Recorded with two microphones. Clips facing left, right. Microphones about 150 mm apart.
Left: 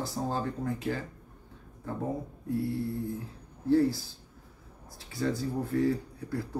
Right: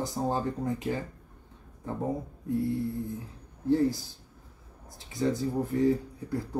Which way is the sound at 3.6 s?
20° right (ahead or behind).